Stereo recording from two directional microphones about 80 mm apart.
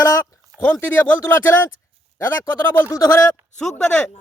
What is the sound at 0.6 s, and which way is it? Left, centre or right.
Speech, left.